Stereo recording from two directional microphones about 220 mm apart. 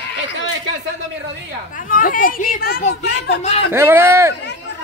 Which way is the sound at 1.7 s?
40° left (ahead or behind).